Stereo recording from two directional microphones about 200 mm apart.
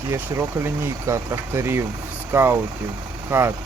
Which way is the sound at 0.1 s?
10° right (ahead or behind).